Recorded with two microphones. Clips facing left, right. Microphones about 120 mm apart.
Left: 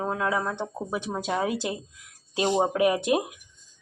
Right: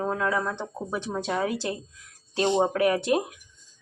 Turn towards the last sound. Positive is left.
turn(degrees=15)  # may be behind; listen again after turning